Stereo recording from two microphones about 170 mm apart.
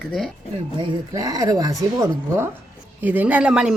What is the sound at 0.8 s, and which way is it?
Speech, 20° right (ahead or behind).